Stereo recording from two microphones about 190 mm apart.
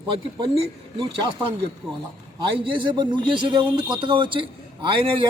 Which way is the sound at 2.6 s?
25° right (ahead or behind).